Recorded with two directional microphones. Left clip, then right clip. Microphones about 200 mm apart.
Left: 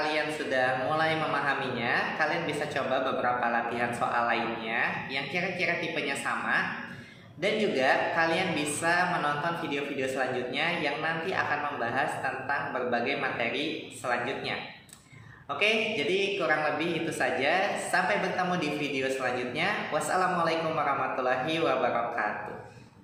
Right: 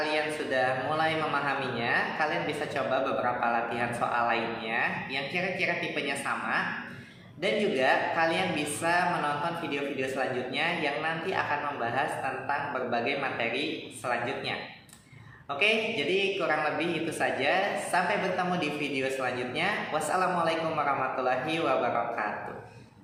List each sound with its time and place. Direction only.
0.1 s speech: centre (ahead or behind)
15.5 s speech: centre (ahead or behind)